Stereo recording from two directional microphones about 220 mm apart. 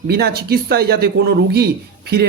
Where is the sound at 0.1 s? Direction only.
45° right (ahead or behind).